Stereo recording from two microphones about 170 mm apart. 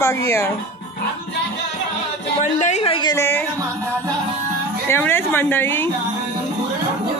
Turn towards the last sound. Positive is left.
turn(degrees=15)  # may be behind; listen again after turning